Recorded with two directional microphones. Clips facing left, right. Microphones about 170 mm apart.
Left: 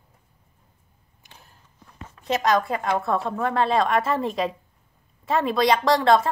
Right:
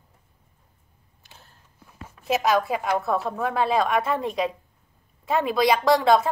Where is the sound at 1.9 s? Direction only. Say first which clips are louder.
Right 1 dB; 5° right (ahead or behind).